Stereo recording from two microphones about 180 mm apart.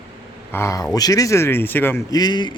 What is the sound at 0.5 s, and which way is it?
Speech, 15° left (ahead or behind).